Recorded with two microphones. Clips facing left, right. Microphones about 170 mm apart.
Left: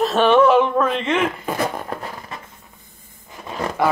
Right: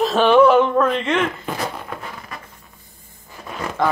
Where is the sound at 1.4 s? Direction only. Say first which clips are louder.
Left 3 dB; 45° left (ahead or behind).